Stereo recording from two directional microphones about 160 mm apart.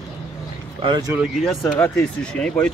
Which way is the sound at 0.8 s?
25° right (ahead or behind).